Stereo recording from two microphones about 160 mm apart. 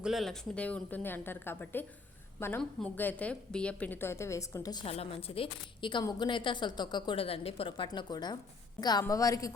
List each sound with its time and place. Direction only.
0.0 s a woman's voice: centre (ahead or behind); by 4.9 s 25° left (ahead or behind)
4.9 s a woman's voice: 35° left (ahead or behind); by 9.5 s 20° left (ahead or behind)